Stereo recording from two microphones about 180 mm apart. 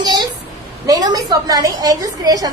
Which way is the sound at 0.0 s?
25° right (ahead or behind).